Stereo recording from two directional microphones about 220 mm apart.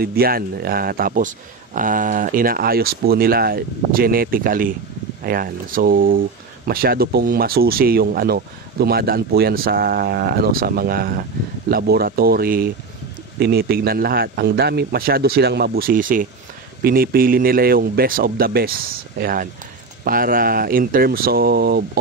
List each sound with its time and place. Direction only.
0.0 s speech: 45° right (ahead or behind)